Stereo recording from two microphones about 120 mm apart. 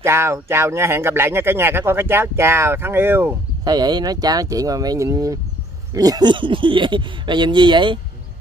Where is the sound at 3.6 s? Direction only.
35° right (ahead or behind).